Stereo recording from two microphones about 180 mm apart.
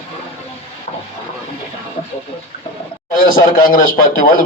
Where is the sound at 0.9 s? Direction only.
35° left (ahead or behind).